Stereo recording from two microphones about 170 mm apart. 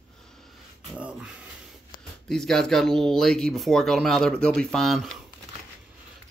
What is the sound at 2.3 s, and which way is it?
Speech, 5° left (ahead or behind).